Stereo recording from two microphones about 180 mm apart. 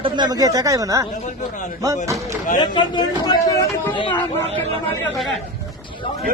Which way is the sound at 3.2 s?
20° left (ahead or behind).